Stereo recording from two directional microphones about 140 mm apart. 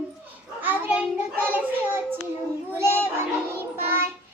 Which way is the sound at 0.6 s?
15° right (ahead or behind).